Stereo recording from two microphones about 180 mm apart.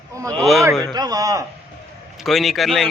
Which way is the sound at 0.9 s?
20° right (ahead or behind).